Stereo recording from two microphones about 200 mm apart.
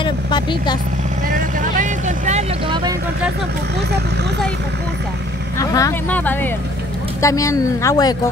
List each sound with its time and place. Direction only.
0.0 s a sound: 25° left (ahead or behind)
1.3 s vehicle: 40° right (ahead or behind)
5.6 s speech: 15° left (ahead or behind)